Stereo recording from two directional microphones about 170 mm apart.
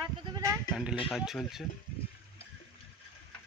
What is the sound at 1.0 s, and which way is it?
Speech, centre (ahead or behind).